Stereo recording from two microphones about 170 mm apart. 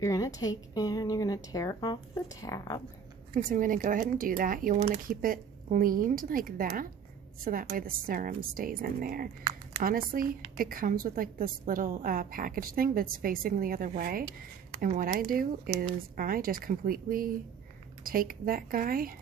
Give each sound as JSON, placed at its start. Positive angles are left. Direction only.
{"t": 0.0, "sound": "speech", "side_deg": 20}
{"t": 3.3, "sound": "a woman's voice", "side_deg": -55}